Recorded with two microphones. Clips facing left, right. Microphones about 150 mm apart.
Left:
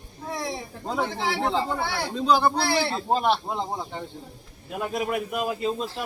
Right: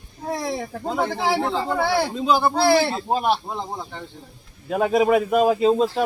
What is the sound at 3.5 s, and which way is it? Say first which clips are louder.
Speech: left 1 dB; 15° left (ahead or behind).